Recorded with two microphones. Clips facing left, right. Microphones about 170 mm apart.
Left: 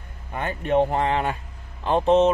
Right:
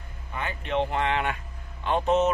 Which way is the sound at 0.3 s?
50° left (ahead or behind).